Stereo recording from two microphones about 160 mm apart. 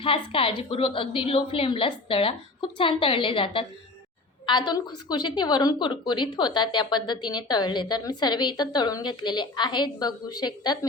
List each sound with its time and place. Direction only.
0.0 s a woman's voice: 35° left (ahead or behind)